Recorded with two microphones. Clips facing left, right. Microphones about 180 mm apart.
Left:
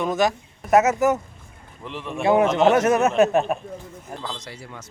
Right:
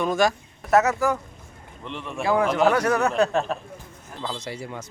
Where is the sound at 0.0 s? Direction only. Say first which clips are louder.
Even; 20° left (ahead or behind).